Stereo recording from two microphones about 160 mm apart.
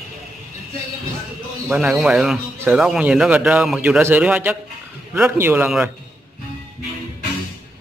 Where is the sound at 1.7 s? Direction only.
5° right (ahead or behind).